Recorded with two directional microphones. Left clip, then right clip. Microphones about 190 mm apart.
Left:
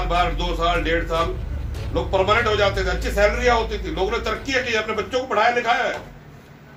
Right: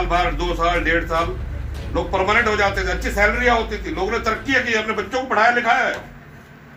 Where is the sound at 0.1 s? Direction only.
20° left (ahead or behind).